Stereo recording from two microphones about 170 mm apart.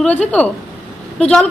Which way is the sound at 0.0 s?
5° left (ahead or behind).